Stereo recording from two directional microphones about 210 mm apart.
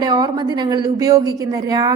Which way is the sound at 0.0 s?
20° right (ahead or behind).